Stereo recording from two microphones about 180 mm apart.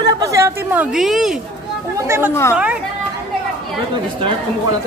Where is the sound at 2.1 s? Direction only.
10° right (ahead or behind).